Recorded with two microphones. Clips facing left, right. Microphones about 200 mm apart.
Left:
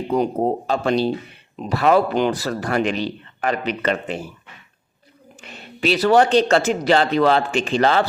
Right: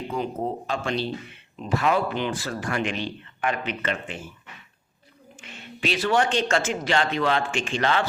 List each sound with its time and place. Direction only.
0.1 s speech: 40° left (ahead or behind)
5.4 s speech: 40° left (ahead or behind)